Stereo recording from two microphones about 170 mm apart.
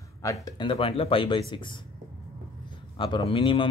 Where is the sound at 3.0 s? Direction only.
30° left (ahead or behind).